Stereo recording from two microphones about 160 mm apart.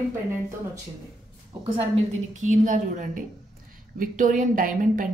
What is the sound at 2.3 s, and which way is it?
A woman's voice, 50° right (ahead or behind).